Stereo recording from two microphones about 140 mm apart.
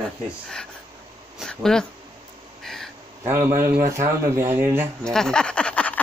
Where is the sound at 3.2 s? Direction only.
20° right (ahead or behind).